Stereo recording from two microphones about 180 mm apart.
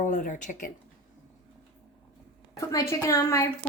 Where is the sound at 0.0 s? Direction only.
45° left (ahead or behind).